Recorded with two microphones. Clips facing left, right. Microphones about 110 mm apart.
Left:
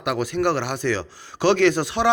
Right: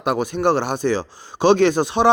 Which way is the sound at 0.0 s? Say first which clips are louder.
Right 3 dB; 25° right (ahead or behind).